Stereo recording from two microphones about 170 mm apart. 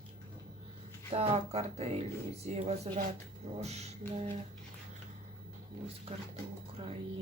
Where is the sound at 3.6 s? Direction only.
40° right (ahead or behind).